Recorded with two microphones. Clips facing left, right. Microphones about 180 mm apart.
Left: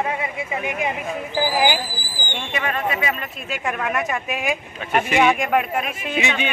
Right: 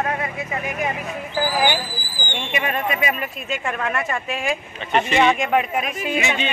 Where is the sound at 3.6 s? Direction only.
5° left (ahead or behind).